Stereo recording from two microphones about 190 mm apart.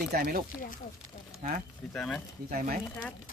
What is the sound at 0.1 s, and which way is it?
Speech, 50° right (ahead or behind).